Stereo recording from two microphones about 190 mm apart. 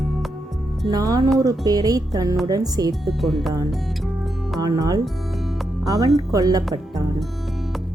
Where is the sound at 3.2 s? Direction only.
Centre (ahead or behind).